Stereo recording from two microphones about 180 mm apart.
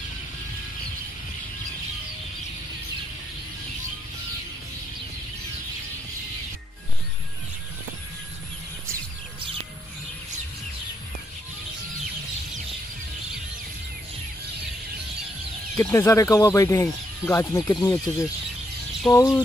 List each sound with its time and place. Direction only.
15.8 s speech: 15° left (ahead or behind)